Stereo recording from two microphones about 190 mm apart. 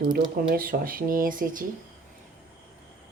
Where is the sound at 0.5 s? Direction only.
50° right (ahead or behind).